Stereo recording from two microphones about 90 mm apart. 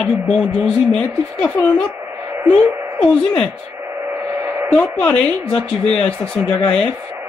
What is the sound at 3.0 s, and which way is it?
Speech, 10° left (ahead or behind).